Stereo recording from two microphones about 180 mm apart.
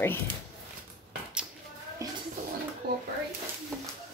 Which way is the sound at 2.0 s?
20° right (ahead or behind).